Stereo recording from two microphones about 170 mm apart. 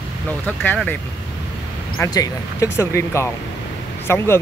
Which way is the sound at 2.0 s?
20° left (ahead or behind).